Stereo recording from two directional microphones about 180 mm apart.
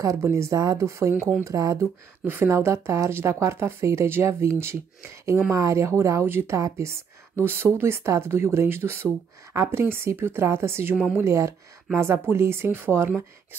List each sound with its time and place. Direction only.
0.0 s speech: 15° right (ahead or behind)